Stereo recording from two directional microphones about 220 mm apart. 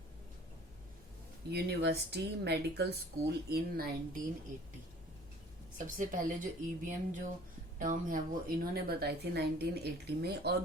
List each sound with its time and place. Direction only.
1.5 s speech: 50° right (ahead or behind)
5.7 s speech: 35° right (ahead or behind)